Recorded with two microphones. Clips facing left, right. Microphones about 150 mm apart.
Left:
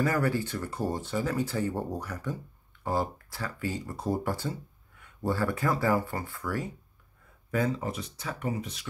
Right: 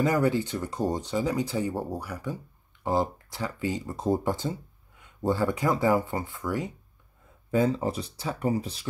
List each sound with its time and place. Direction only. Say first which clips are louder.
0.0 s speech: right 3 dB; 20° right (ahead or behind)
7.5 s speech: right 5 dB; 30° right (ahead or behind)